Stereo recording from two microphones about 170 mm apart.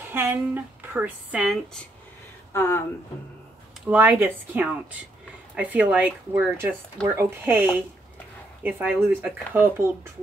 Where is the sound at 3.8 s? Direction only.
10° right (ahead or behind).